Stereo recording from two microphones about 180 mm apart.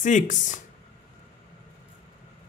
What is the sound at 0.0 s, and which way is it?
Speech, 45° left (ahead or behind).